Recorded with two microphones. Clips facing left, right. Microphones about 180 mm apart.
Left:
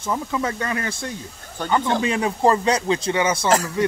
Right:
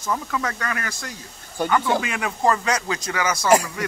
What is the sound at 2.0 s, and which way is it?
Speech, 30° left (ahead or behind).